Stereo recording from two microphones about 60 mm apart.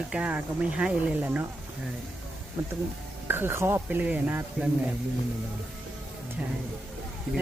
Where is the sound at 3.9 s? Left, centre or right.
Right.